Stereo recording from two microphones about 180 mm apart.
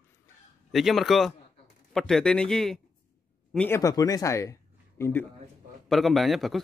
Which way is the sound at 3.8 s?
20° left (ahead or behind).